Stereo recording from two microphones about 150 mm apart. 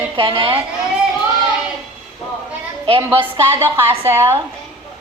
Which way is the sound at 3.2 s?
15° right (ahead or behind).